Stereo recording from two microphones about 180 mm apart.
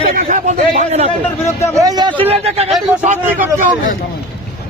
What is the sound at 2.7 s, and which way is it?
Speech, centre (ahead or behind).